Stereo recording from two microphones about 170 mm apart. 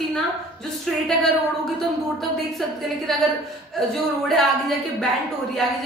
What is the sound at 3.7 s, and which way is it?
A woman's voice, centre (ahead or behind).